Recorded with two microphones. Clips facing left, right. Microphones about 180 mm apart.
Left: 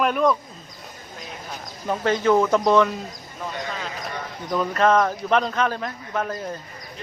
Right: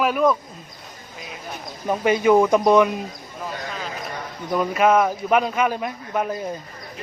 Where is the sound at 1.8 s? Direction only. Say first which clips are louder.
Right 3 dB; 10° right (ahead or behind).